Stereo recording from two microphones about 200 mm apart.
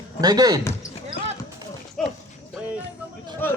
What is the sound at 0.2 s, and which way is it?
Speech, 20° right (ahead or behind).